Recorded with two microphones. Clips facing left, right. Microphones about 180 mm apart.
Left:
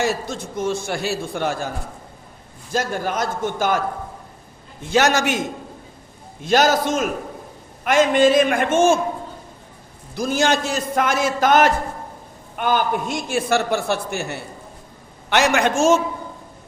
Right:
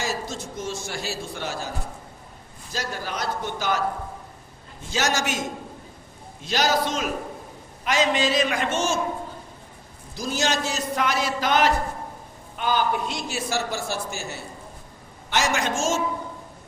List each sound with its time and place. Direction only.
0.0 s a man's voice: 60° left (ahead or behind)
2.7 s a man's voice: 50° left (ahead or behind)
6.4 s a man's voice: 50° left (ahead or behind)
10.2 s a man's voice: 55° left (ahead or behind)